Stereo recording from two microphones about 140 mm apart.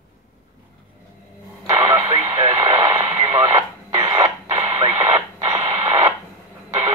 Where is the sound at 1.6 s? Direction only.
25° right (ahead or behind).